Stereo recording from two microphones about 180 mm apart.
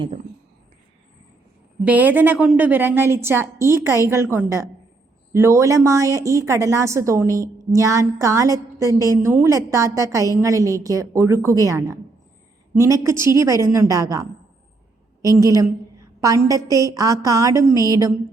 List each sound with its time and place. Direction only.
1.8 s a woman's voice: 10° right (ahead or behind)